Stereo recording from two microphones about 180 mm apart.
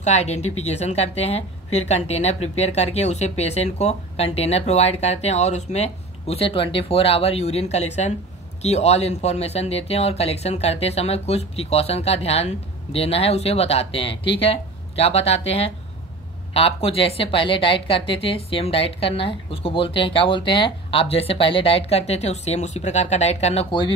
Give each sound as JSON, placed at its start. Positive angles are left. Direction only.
{"t": 0.0, "sound": "a woman's voice", "side_deg": 40}